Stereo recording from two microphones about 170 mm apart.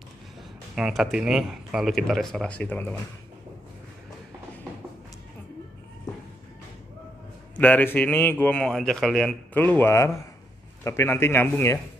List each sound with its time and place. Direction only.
0.7 s speech: centre (ahead or behind)
7.5 s a man's voice: 10° left (ahead or behind)